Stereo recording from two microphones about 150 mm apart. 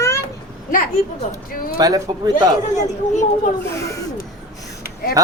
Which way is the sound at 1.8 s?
25° right (ahead or behind).